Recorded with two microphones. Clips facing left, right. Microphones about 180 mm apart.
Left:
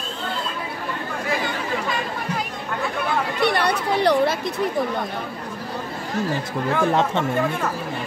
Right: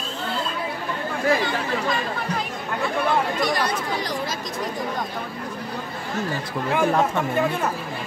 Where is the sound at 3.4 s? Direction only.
65° left (ahead or behind).